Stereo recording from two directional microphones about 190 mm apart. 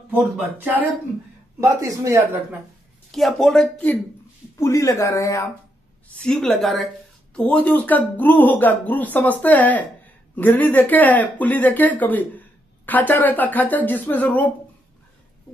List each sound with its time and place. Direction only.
0.1 s speech: 10° right (ahead or behind)
3.1 s speech: centre (ahead or behind)
6.1 s a woman's voice: 5° left (ahead or behind)